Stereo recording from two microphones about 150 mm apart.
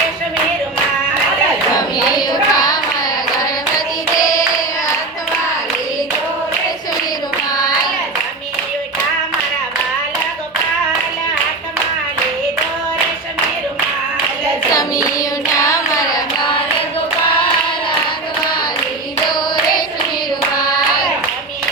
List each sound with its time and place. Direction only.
2.3 s carnatic music: 25° left (ahead or behind)
4.2 s hands: 25° left (ahead or behind)
14.7 s clapping: 25° left (ahead or behind)
15.5 s carnatic music: 20° left (ahead or behind)